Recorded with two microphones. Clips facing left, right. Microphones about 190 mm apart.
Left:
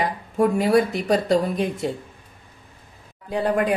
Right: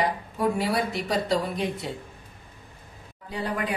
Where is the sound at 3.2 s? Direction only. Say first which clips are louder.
Left 8 dB; 50° left (ahead or behind).